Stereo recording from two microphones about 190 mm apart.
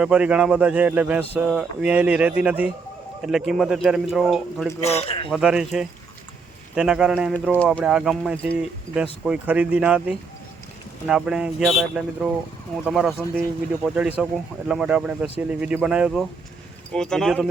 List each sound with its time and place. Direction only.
0.0 s speech: 5° right (ahead or behind)
4.8 s speech: 30° left (ahead or behind)
5.3 s speech: 5° right (ahead or behind)
7.6 s speech: 5° left (ahead or behind)